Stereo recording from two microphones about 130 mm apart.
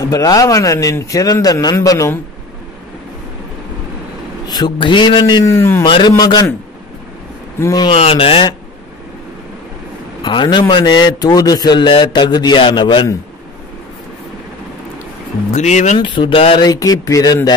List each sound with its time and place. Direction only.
0.0 s speech: 30° left (ahead or behind)
4.5 s a man's voice: 35° left (ahead or behind)
5.9 s a man's voice: 40° left (ahead or behind)
6.1 s a man's voice: 30° left (ahead or behind)
7.6 s a man's voice: 30° left (ahead or behind)
7.9 s speech: 45° left (ahead or behind)
10.2 s a man's voice: 40° left (ahead or behind)
15.5 s speech: 65° left (ahead or behind)
16.0 s a man's voice: 40° left (ahead or behind)
16.6 s speech: 30° left (ahead or behind)